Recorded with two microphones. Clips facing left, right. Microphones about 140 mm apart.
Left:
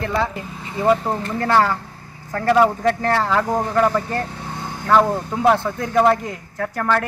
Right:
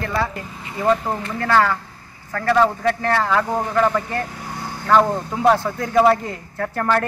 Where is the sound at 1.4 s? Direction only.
20° left (ahead or behind).